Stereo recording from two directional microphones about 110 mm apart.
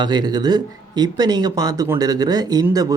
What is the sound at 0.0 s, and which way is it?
Speech, 40° right (ahead or behind).